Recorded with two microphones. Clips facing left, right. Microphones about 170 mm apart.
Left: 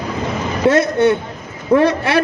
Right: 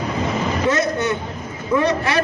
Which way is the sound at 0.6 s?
60° left (ahead or behind).